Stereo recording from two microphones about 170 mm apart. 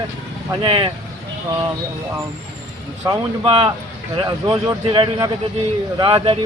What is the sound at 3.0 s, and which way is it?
A man's voice, 20° right (ahead or behind).